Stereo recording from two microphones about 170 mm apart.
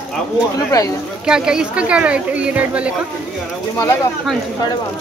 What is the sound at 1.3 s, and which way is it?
Speech, 5° right (ahead or behind).